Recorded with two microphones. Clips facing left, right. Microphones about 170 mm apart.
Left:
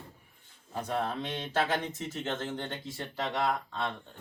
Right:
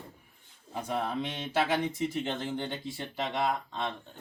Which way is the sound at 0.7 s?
10° right (ahead or behind).